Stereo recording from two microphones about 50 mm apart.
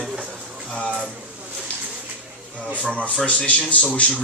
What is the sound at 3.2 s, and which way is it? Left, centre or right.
Speech, left.